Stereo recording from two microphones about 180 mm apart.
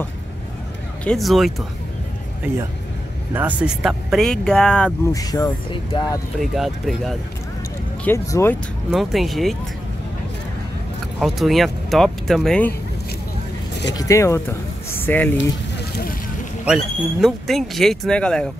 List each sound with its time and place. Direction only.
1.0 s speech: centre (ahead or behind)
3.3 s speech: 5° right (ahead or behind)
5.1 s speech: 20° left (ahead or behind)
6.4 s speech: centre (ahead or behind)
8.0 s speech: 15° left (ahead or behind)
8.9 s speech: centre (ahead or behind)
11.1 s speech: centre (ahead or behind)
13.9 s speech: 15° left (ahead or behind)
16.6 s speech: centre (ahead or behind)